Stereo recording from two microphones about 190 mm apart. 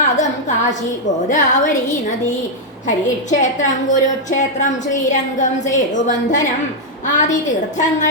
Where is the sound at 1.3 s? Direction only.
40° left (ahead or behind).